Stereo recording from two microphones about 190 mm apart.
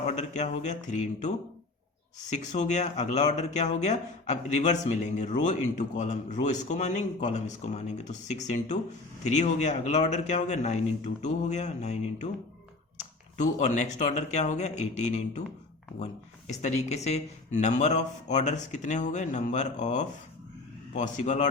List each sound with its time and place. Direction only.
0.1 s speech: 35° left (ahead or behind)
16.5 s speech: 35° left (ahead or behind)